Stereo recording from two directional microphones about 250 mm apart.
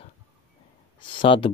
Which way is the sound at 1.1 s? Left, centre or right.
Centre.